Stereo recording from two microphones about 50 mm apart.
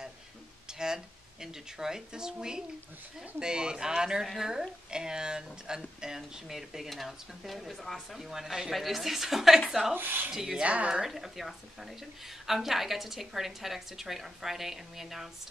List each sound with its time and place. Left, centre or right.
0.7 s a woman's voice: centre
8.3 s a woman's voice: centre
9.9 s speech: right
10.3 s a woman's voice: centre
10.6 s speech: right
11.0 s a woman's voice: centre